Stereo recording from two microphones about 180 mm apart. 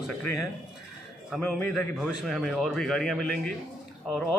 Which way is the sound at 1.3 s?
5° left (ahead or behind).